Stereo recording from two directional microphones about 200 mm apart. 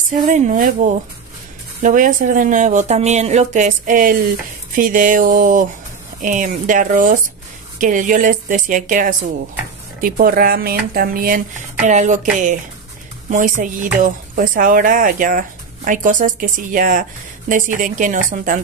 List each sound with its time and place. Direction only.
0.3 s speech: 40° right (ahead or behind)